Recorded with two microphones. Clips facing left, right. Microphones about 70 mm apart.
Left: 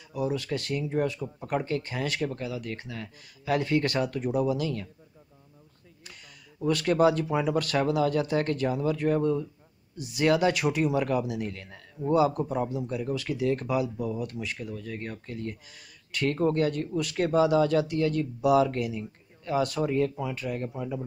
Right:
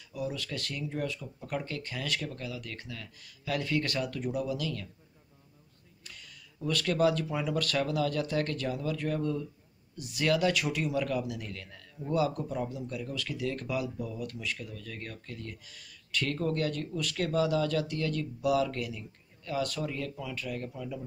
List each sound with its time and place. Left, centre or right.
0.1 s speech: left
6.0 s speech: left